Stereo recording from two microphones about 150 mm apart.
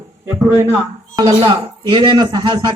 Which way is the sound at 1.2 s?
30° right (ahead or behind).